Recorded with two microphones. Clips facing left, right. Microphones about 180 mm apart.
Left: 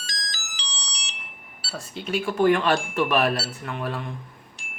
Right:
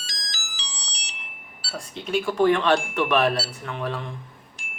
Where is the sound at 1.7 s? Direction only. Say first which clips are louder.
Right 1 dB; centre (ahead or behind).